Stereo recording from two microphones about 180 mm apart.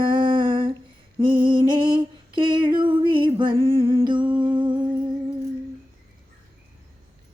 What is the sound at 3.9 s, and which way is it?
Humming, 25° right (ahead or behind).